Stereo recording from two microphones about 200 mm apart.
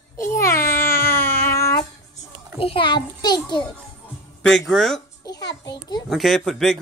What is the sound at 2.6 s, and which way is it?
A child's voice, 25° left (ahead or behind).